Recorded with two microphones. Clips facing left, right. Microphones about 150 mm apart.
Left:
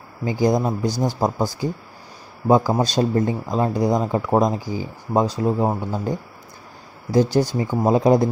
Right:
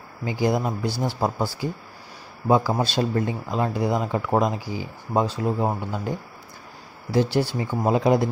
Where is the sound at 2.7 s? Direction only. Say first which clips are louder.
Left 4 dB; 40° left (ahead or behind).